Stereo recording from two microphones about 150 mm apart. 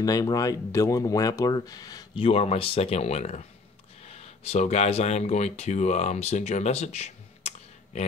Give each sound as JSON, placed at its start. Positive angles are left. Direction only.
{"t": 0.0, "sound": "speech", "side_deg": 25}
{"t": 2.1, "sound": "speech", "side_deg": 40}